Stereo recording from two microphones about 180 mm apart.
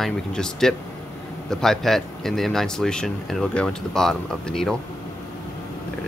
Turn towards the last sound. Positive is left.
turn(degrees=5)  # may be behind; listen again after turning